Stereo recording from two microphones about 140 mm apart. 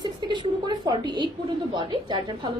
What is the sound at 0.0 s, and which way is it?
A woman's voice, 35° right (ahead or behind).